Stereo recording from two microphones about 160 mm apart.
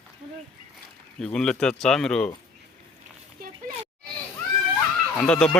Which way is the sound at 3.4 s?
65° right (ahead or behind).